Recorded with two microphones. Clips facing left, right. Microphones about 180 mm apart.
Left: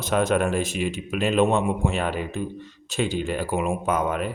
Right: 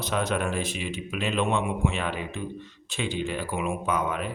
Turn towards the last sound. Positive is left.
turn(degrees=45)  # may be behind; listen again after turning